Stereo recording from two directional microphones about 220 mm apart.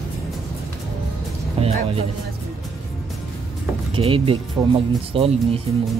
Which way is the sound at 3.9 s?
25° right (ahead or behind).